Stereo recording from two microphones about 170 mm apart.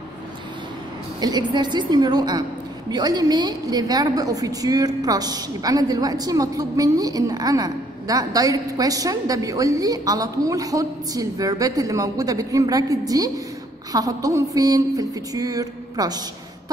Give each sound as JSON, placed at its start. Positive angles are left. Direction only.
{"t": 1.2, "sound": "a woman's voice", "side_deg": -25}